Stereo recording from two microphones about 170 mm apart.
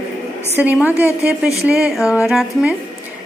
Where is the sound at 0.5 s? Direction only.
10° right (ahead or behind).